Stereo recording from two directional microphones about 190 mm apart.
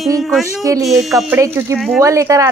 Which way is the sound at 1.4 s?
15° right (ahead or behind).